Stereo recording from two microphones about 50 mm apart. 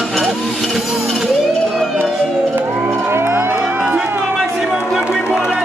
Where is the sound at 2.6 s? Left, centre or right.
Right.